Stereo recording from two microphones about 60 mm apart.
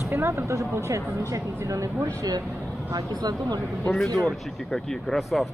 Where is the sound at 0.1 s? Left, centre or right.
Right.